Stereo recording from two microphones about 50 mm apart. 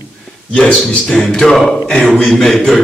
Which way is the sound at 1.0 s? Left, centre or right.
Centre.